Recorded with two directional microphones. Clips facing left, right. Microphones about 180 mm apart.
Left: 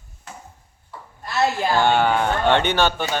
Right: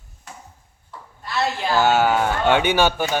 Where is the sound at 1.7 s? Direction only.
5° right (ahead or behind).